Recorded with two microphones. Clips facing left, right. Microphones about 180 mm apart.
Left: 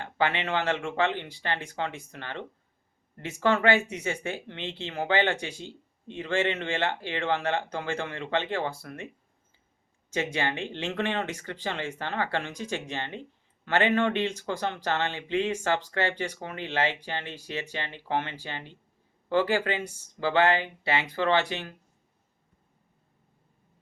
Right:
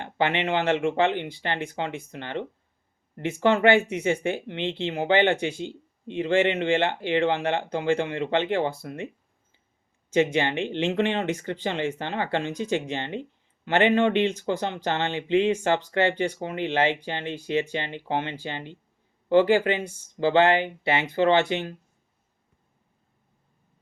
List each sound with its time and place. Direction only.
0.0 s speech: 25° right (ahead or behind)
10.1 s speech: 20° right (ahead or behind)